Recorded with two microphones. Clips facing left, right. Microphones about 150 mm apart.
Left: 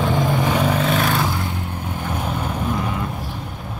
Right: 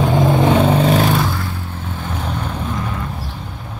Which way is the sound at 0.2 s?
20° right (ahead or behind).